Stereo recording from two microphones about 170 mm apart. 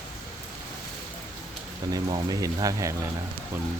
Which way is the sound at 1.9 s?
20° right (ahead or behind).